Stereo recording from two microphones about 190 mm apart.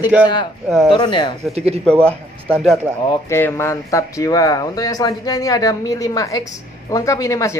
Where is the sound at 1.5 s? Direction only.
35° right (ahead or behind).